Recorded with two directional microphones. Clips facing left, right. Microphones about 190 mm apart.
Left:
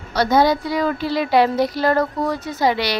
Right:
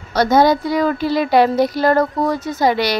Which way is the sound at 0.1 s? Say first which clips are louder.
Right 3 dB; 45° right (ahead or behind).